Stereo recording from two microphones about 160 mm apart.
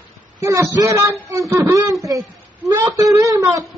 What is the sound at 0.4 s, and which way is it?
Speech, 20° right (ahead or behind).